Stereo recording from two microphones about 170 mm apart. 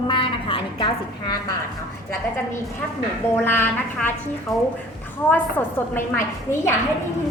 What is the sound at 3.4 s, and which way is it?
Speech, 10° left (ahead or behind).